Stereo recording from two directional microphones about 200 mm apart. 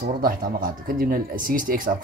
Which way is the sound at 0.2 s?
45° right (ahead or behind).